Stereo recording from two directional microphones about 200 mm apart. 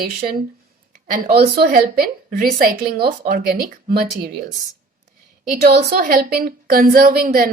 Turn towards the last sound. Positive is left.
turn(degrees=-45)  # may be behind; listen again after turning